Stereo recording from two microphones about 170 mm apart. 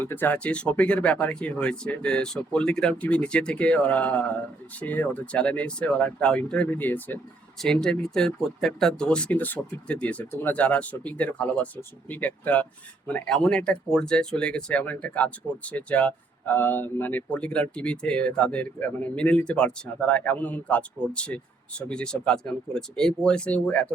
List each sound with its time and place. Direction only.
0.0 s speech: 10° left (ahead or behind)